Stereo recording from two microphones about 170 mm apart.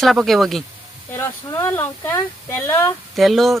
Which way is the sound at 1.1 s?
15° left (ahead or behind).